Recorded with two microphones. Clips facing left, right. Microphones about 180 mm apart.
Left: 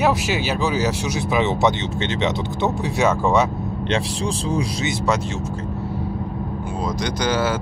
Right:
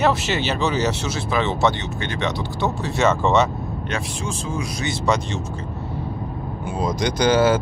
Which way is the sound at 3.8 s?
30° left (ahead or behind).